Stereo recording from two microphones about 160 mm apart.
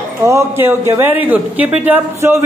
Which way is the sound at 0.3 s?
15° right (ahead or behind).